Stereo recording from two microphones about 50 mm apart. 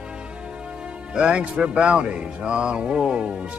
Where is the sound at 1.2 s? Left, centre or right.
Centre.